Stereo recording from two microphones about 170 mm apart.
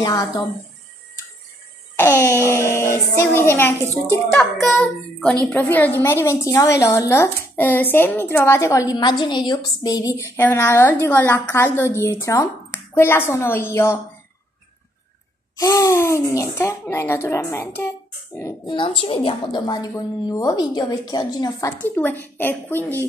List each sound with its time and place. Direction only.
0.0 s a woman's voice: 25° left (ahead or behind)
2.0 s a woman's voice: 15° left (ahead or behind)
4.3 s child singing: 5° left (ahead or behind)
5.5 s a woman's voice: 10° left (ahead or behind)
15.5 s a woman's voice: 20° left (ahead or behind)
18.7 s a woman's voice: 30° left (ahead or behind); by 23.0 s 10° left (ahead or behind)